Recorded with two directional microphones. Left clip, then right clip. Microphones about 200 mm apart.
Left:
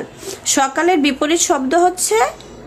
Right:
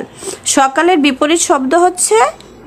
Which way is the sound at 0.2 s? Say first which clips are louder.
Right 5 dB; 25° right (ahead or behind).